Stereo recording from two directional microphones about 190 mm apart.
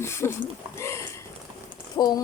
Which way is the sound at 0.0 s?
15° left (ahead or behind).